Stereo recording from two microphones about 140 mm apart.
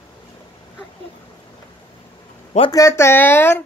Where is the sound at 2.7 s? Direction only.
20° left (ahead or behind).